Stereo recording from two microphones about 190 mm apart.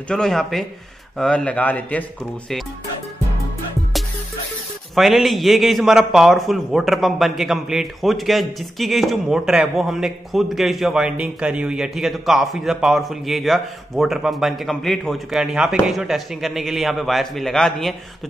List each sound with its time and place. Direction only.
0.1 s a man's voice: centre (ahead or behind)
4.9 s a man's voice: centre (ahead or behind)